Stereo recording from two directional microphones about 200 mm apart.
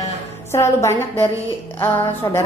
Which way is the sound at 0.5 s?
15° left (ahead or behind).